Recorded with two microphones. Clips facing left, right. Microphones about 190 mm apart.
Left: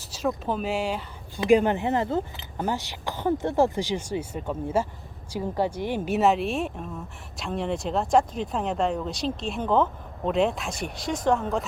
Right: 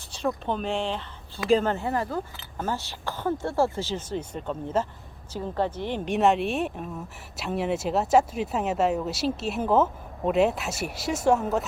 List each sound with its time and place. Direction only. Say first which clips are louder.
0.0 s speech: left 1 dB; 5° left (ahead or behind)